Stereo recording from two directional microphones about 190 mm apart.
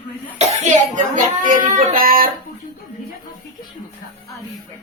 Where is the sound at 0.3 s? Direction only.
35° right (ahead or behind).